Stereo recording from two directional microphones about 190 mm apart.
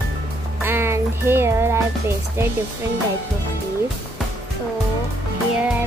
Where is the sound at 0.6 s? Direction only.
10° right (ahead or behind).